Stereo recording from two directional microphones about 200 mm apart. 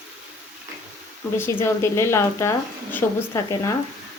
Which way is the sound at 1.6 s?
15° left (ahead or behind).